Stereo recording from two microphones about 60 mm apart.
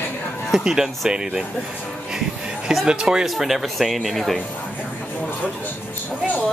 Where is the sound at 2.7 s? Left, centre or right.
Centre.